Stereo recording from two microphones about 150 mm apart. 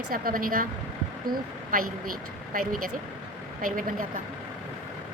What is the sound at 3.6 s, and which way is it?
Speech, 65° right (ahead or behind).